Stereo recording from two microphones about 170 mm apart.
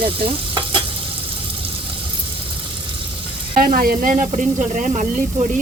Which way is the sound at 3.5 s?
55° right (ahead or behind).